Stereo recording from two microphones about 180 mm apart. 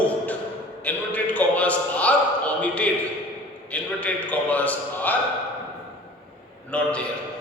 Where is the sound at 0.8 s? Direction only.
10° left (ahead or behind).